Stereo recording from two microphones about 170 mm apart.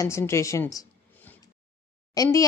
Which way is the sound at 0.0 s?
15° left (ahead or behind).